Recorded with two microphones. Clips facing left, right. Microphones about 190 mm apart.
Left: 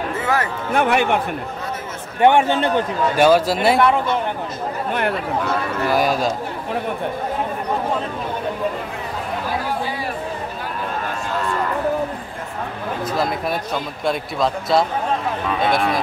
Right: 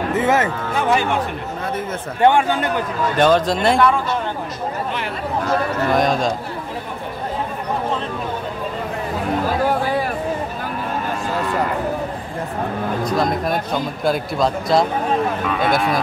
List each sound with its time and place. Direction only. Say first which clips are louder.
0.2 s speech: right 4 dB; 20° right (ahead or behind)
0.7 s speech: left 2 dB; 60° left (ahead or behind)
2.2 s a man's voice: left 1 dB; 20° left (ahead or behind)
3.2 s speech: left 1 dB; 10° left (ahead or behind)
5.9 s speech: even; 5° left (ahead or behind)
13.1 s speech: right 2 dB; 5° left (ahead or behind)